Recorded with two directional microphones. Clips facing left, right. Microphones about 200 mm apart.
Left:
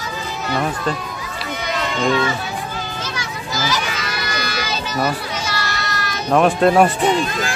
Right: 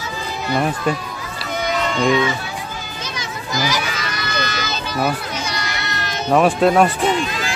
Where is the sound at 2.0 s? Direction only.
15° right (ahead or behind).